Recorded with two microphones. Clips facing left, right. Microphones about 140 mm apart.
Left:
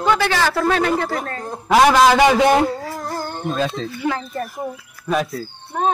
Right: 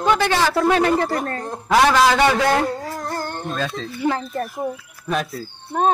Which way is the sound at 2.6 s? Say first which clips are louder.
Left 1 dB; centre (ahead or behind).